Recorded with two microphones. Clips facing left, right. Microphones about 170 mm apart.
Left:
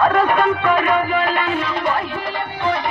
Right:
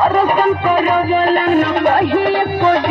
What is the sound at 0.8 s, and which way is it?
Music, 35° right (ahead or behind).